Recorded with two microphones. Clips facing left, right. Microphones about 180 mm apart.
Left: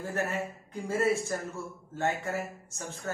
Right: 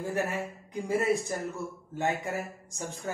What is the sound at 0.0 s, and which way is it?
A man's voice, 15° right (ahead or behind).